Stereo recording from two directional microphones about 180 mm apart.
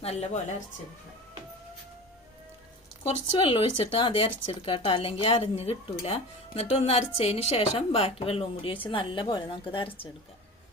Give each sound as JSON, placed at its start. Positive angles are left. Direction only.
{"t": 0.0, "sound": "speech", "side_deg": 35}
{"t": 3.3, "sound": "speech", "side_deg": 30}